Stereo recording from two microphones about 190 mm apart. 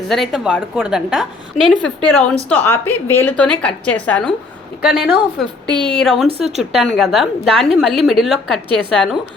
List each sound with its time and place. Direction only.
0.1 s a woman's voice: centre (ahead or behind)
4.9 s a woman's voice: 5° right (ahead or behind)
5.6 s a woman's voice: 25° right (ahead or behind)
5.9 s a woman's voice: centre (ahead or behind)